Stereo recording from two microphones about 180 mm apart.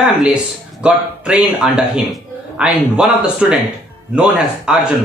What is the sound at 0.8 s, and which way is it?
A man's voice, 5° right (ahead or behind).